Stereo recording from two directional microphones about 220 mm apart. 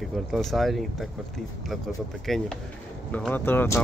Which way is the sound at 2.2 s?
Centre (ahead or behind).